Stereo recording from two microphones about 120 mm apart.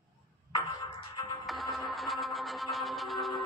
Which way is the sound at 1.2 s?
35° left (ahead or behind).